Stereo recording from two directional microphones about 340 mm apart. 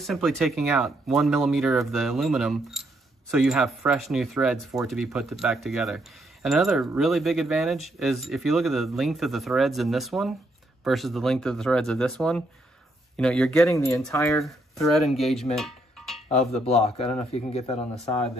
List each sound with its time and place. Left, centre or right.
0.0 s speech: centre
15.5 s a sound: centre
16.5 s a man's voice: centre